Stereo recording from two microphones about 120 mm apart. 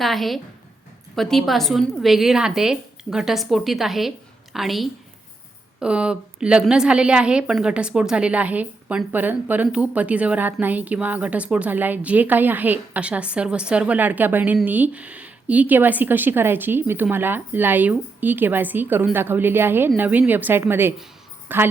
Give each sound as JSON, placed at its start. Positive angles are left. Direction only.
{"t": 0.0, "sound": "a woman's voice", "side_deg": 0}